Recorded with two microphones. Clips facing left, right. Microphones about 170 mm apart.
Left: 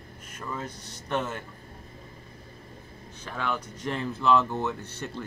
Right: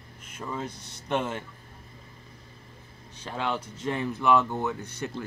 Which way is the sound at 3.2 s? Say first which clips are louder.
Right 1 dB; 20° right (ahead or behind).